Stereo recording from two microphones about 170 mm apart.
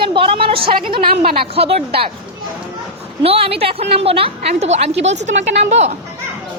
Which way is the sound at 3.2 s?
35° right (ahead or behind).